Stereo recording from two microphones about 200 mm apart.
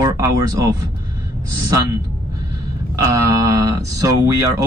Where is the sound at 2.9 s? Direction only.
15° right (ahead or behind).